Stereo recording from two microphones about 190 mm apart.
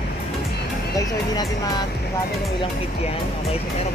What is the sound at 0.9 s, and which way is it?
Speech, 20° left (ahead or behind).